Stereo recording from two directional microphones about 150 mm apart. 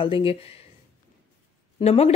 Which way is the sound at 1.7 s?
45° left (ahead or behind).